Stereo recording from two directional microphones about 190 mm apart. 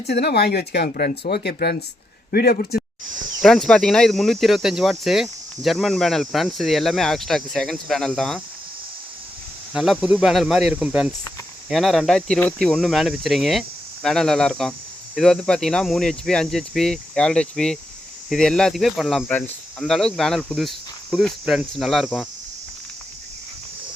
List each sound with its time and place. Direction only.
0.1 s a man's voice: 60° left (ahead or behind)
3.4 s speech: centre (ahead or behind)
9.7 s speech: 5° right (ahead or behind)